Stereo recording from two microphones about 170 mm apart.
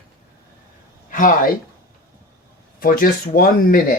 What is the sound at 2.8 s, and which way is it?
Speech, 55° left (ahead or behind).